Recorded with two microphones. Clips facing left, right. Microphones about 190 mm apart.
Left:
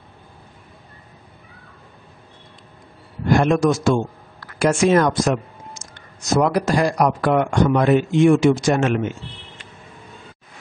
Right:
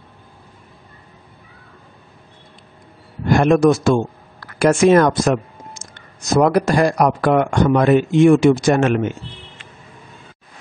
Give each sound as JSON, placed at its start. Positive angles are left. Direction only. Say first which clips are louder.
{"t": 3.3, "sound": "speech", "louder": "right 4 dB", "side_deg": -55}